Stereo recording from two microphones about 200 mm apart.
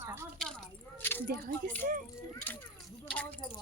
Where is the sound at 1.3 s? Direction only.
45° right (ahead or behind).